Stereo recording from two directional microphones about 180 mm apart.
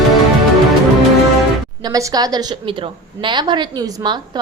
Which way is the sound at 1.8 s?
20° right (ahead or behind).